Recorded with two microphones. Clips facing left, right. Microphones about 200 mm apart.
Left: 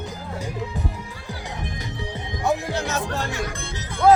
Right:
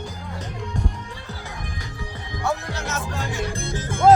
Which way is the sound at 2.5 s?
20° left (ahead or behind).